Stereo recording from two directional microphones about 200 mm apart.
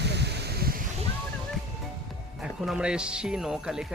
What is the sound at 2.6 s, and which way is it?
Speech, 5° right (ahead or behind).